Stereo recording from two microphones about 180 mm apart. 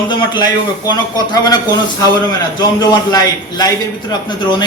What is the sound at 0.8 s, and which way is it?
A man's voice, 20° left (ahead or behind).